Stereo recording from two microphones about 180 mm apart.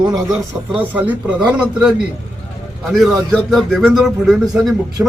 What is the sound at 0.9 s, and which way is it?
Speech, 10° right (ahead or behind).